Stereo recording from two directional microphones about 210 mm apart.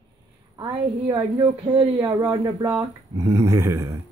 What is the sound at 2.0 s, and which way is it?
Speech, 15° right (ahead or behind).